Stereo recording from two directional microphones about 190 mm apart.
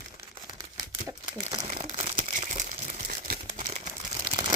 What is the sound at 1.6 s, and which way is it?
Crumpling, 30° right (ahead or behind).